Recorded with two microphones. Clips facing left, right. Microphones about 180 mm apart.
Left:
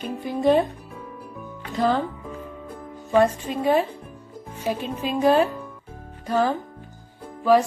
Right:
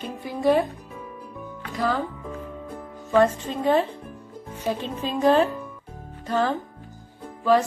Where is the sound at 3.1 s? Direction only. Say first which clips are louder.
Even; 10° left (ahead or behind).